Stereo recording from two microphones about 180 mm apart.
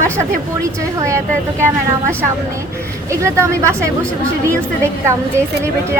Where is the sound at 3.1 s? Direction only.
15° right (ahead or behind).